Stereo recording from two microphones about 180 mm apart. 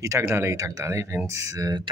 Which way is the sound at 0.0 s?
15° right (ahead or behind).